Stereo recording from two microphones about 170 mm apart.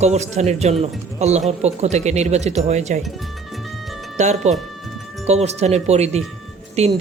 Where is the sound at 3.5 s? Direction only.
Centre (ahead or behind).